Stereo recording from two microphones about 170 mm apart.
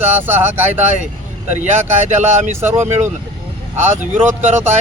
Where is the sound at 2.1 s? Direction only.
40° right (ahead or behind).